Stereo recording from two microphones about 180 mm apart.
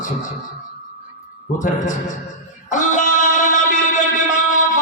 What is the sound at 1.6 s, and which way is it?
Speech, 45° left (ahead or behind).